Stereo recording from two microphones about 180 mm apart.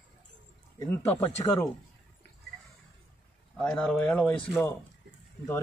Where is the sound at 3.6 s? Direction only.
5° left (ahead or behind).